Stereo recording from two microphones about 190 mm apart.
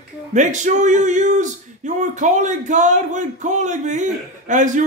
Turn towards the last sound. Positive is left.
turn(degrees=-40)  # may be behind; listen again after turning